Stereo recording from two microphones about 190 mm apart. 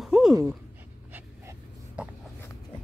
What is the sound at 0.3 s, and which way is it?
Speech, 15° right (ahead or behind).